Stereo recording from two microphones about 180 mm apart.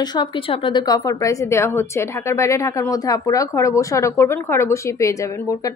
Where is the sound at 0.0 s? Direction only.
25° left (ahead or behind).